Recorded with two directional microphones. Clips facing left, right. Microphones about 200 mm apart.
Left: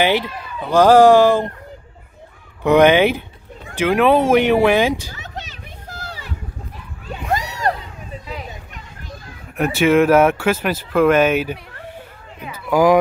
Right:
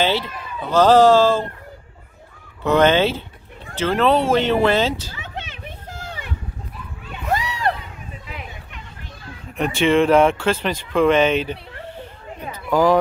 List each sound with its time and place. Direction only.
0.7 s speech: 10° left (ahead or behind)
2.6 s speech: 15° left (ahead or behind)
5.1 s a sound: 40° left (ahead or behind)
9.6 s speech: 5° left (ahead or behind)
12.6 s speech: 10° left (ahead or behind)